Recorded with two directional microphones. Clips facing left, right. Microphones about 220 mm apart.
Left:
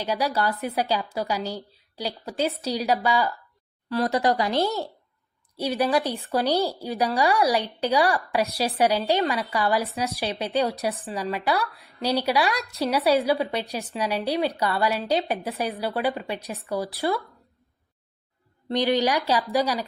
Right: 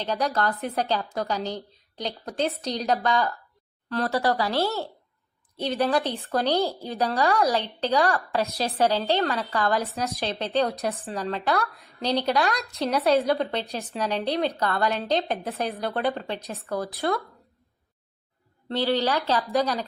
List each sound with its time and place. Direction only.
0.0 s a woman's voice: 10° left (ahead or behind)
18.7 s a woman's voice: 15° left (ahead or behind)